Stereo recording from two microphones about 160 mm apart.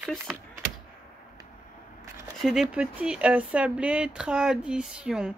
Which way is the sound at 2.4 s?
5° right (ahead or behind).